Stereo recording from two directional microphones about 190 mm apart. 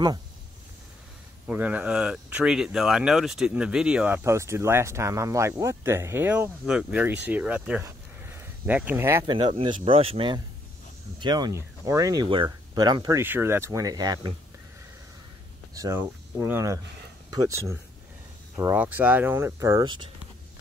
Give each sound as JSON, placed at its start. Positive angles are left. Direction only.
{"t": 1.5, "sound": "speech", "side_deg": -10}
{"t": 7.8, "sound": "a sound", "side_deg": -15}
{"t": 9.2, "sound": "speech", "side_deg": -25}
{"t": 15.7, "sound": "speech", "side_deg": -15}
{"t": 18.6, "sound": "speech", "side_deg": -10}